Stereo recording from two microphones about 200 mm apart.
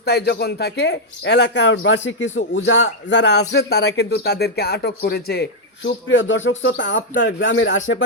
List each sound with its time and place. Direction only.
0.0 s speech: 55° left (ahead or behind); by 8.0 s 70° left (ahead or behind)